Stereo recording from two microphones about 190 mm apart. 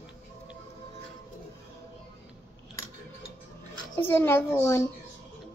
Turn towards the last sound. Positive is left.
turn(degrees=15)  # may be behind; listen again after turning